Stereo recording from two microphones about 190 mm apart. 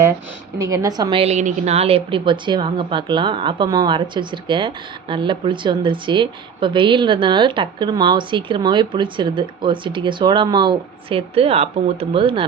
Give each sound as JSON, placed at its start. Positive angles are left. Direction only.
{"t": 0.6, "sound": "a woman's voice", "side_deg": -20}